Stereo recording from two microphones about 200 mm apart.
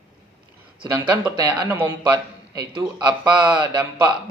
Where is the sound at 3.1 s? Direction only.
5° right (ahead or behind).